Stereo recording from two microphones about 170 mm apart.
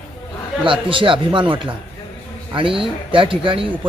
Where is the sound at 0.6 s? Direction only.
30° right (ahead or behind).